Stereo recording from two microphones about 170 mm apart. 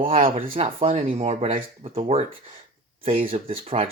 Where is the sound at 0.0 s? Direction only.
35° right (ahead or behind).